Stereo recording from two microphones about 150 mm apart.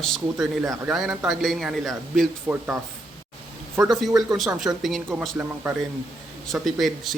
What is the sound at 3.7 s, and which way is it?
Speech, 25° right (ahead or behind).